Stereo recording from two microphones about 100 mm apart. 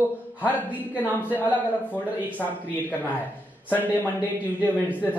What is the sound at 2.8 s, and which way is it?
Speech, 15° left (ahead or behind).